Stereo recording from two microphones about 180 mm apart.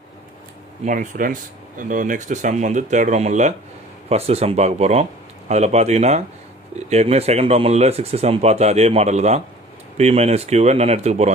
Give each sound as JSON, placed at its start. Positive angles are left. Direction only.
{"t": 0.8, "sound": "speech", "side_deg": -50}